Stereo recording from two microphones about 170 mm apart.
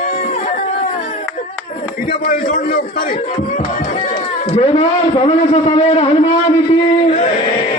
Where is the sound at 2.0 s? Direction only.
60° left (ahead or behind).